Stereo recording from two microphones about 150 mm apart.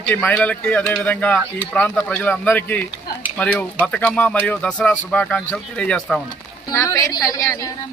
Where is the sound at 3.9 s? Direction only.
10° left (ahead or behind).